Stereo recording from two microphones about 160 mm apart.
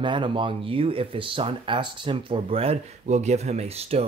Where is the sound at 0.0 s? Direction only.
30° right (ahead or behind).